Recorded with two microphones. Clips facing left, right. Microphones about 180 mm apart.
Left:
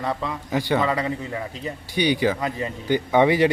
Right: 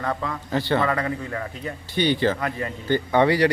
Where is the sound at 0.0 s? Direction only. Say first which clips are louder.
Even; 10° left (ahead or behind).